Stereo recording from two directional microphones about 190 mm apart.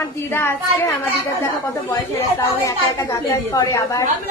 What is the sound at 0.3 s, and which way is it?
Speech, 10° left (ahead or behind).